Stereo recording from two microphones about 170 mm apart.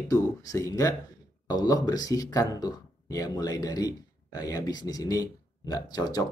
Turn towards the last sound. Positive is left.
turn(degrees=20)  # may be behind; listen again after turning